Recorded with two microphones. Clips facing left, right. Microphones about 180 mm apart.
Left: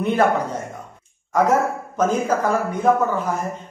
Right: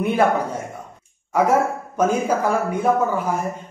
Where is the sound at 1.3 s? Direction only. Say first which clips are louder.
Even; 10° right (ahead or behind).